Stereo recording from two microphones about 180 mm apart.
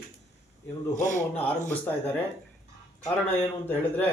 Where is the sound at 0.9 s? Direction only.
45° left (ahead or behind).